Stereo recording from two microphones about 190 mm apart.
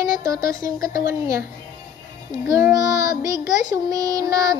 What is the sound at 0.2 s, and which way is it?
A woman's voice, 15° right (ahead or behind).